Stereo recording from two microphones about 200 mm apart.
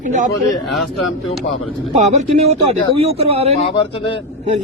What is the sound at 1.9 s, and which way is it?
Speech, 35° right (ahead or behind).